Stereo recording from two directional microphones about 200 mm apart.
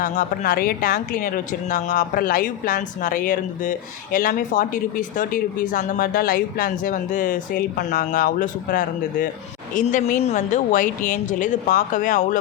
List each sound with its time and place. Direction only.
0.0 s a woman's voice: 40° left (ahead or behind)